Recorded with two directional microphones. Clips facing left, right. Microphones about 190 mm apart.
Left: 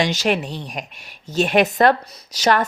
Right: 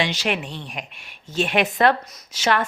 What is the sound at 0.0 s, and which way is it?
A woman's voice, 45° left (ahead or behind).